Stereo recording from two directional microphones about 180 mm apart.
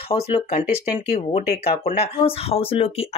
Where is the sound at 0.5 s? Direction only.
35° left (ahead or behind).